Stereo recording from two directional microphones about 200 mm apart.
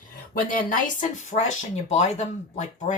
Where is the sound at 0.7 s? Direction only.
40° left (ahead or behind).